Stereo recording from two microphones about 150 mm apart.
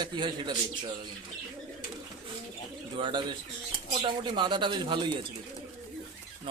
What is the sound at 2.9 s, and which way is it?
Speech, 35° right (ahead or behind).